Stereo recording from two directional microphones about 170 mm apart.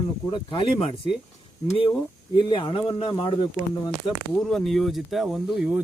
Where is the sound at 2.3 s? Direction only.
25° left (ahead or behind).